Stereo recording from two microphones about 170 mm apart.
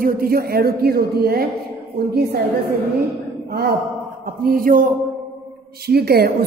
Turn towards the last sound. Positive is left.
turn(degrees=-65)  # may be behind; listen again after turning